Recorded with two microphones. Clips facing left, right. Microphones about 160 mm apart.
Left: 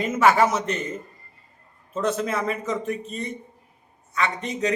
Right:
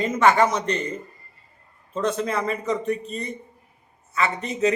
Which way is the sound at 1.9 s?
5° left (ahead or behind).